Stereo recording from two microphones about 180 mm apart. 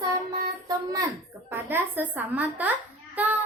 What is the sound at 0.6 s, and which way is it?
A woman's voice, 20° right (ahead or behind).